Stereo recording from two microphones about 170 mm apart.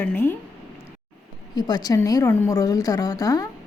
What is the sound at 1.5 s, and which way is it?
A woman's voice, 25° left (ahead or behind).